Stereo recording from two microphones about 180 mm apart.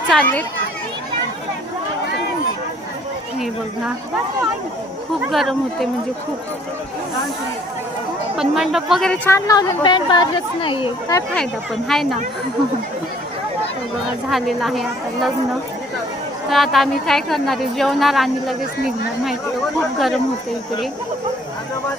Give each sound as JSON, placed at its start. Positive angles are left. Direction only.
{"t": 0.1, "sound": "a child's voice", "side_deg": 10}
{"t": 5.3, "sound": "speech", "side_deg": 0}
{"t": 8.4, "sound": "speech", "side_deg": 0}
{"t": 9.5, "sound": "a woman's voice", "side_deg": 20}
{"t": 11.3, "sound": "speech", "side_deg": 0}
{"t": 14.3, "sound": "speech", "side_deg": 0}
{"t": 16.5, "sound": "speech", "side_deg": 0}